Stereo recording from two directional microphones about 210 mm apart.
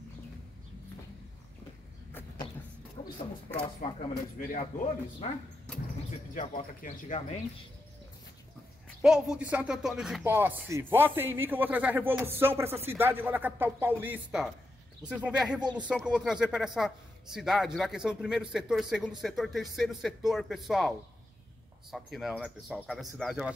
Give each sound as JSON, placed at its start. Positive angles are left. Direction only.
{"t": 3.8, "sound": "speech", "side_deg": 40}
{"t": 6.3, "sound": "speech", "side_deg": 35}
{"t": 9.0, "sound": "speech", "side_deg": -5}
{"t": 15.6, "sound": "speech", "side_deg": -20}
{"t": 15.9, "sound": "speech", "side_deg": 0}
{"t": 21.9, "sound": "speech", "side_deg": 0}